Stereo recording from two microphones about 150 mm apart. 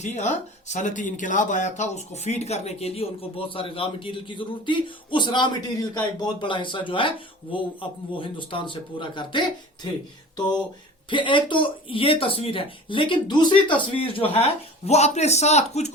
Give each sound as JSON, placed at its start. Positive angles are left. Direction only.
{"t": 0.0, "sound": "speech", "side_deg": 50}
{"t": 10.3, "sound": "a sound", "side_deg": 30}
{"t": 11.1, "sound": "a man's voice", "side_deg": 30}